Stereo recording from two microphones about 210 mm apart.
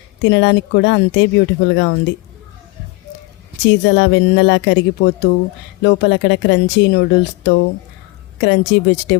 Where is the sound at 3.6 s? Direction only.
60° left (ahead or behind).